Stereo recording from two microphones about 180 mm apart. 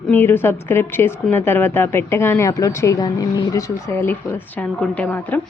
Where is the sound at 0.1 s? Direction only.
10° left (ahead or behind).